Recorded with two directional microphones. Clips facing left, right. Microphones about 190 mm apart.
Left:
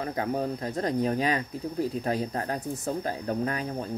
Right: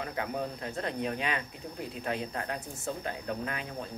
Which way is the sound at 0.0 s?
40° left (ahead or behind).